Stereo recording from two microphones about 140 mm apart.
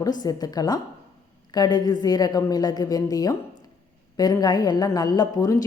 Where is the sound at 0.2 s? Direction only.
25° left (ahead or behind).